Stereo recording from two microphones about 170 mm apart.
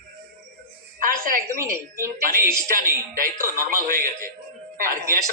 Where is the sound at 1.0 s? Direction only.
55° right (ahead or behind).